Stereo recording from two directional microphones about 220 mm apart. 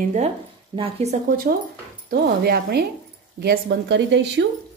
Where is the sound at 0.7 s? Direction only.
20° right (ahead or behind).